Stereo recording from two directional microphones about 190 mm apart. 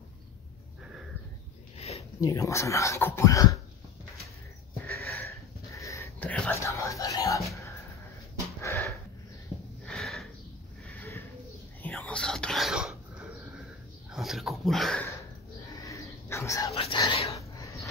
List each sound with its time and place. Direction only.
1.8 s a sound: 30° left (ahead or behind)
2.1 s speech: 15° left (ahead or behind)
5.1 s whispering: 15° left (ahead or behind)
8.5 s sniff: 15° left (ahead or behind)
9.8 s sniff: centre (ahead or behind)
11.8 s whispering: 5° left (ahead or behind)
14.1 s dog: centre (ahead or behind)
15.8 s a sound: 15° left (ahead or behind)
16.7 s whispering: 25° left (ahead or behind)
17.4 s a sound: 15° left (ahead or behind)